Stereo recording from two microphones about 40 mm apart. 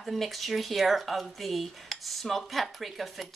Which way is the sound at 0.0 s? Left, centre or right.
Centre.